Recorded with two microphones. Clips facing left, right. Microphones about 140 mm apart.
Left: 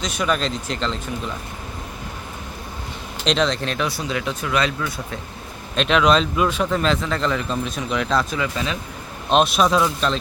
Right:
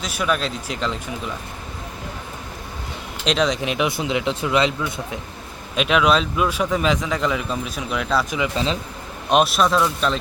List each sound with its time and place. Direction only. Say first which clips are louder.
0.0 s a man's voice: left 1 dB; 5° right (ahead or behind)
3.2 s speech: even; 10° right (ahead or behind)
5.7 s a man's voice: left 1 dB; 5° right (ahead or behind)
8.5 s speech: right 3 dB; 30° right (ahead or behind)
9.3 s speech: even; 5° right (ahead or behind)